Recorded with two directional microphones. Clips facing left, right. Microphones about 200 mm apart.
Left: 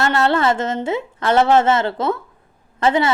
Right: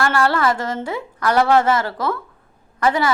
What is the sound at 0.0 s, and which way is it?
A woman's voice, 20° left (ahead or behind).